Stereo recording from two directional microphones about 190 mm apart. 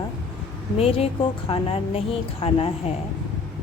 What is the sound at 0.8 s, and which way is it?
A woman's voice, 30° left (ahead or behind).